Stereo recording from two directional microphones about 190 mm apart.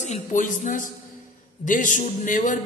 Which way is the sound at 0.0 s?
40° left (ahead or behind).